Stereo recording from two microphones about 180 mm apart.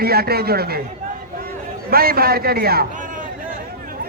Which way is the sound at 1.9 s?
55° right (ahead or behind).